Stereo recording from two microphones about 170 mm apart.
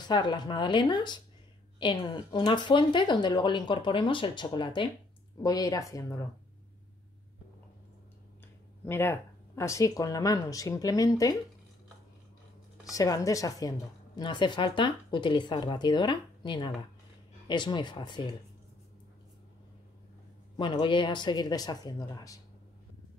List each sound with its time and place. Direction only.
0.0 s a woman's voice: 25° left (ahead or behind)
8.8 s a woman's voice: 15° left (ahead or behind)
12.9 s a woman's voice: 20° left (ahead or behind)
20.5 s a woman's voice: 30° left (ahead or behind)